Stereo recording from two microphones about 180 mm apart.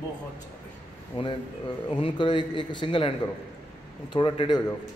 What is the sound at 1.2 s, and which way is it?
A man's voice, 25° left (ahead or behind).